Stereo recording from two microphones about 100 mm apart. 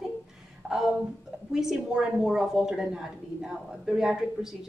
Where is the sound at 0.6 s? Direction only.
15° right (ahead or behind).